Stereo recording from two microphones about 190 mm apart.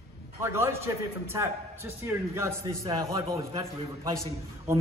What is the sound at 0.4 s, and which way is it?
A man's voice, 15° right (ahead or behind).